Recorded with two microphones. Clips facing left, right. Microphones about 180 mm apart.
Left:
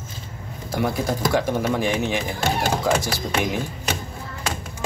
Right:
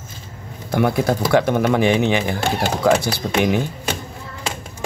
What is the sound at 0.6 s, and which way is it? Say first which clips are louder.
Speech: right 5 dB; 60° right (ahead or behind).